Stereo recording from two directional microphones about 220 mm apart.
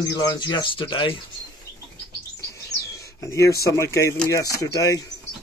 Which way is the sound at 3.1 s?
10° left (ahead or behind).